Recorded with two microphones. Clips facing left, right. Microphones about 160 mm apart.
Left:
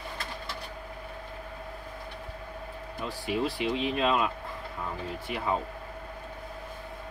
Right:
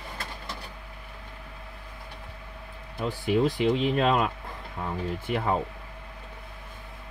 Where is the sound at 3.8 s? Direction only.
50° right (ahead or behind).